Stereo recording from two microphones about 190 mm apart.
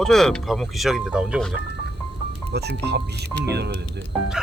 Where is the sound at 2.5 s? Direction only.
60° right (ahead or behind).